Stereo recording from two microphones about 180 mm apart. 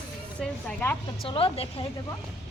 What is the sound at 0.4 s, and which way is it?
Speech, centre (ahead or behind).